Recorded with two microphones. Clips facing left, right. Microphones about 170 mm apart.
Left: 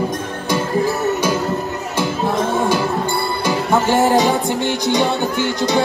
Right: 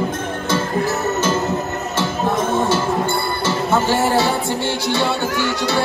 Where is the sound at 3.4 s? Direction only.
15° left (ahead or behind).